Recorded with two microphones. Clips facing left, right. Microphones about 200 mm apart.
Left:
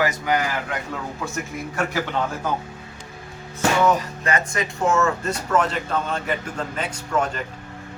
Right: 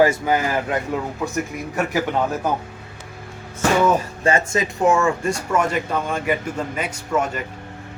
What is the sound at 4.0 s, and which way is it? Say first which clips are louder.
Speech: right 4 dB; 25° right (ahead or behind).